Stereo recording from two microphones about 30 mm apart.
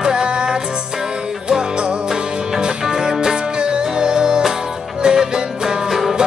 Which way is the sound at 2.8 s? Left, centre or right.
Centre.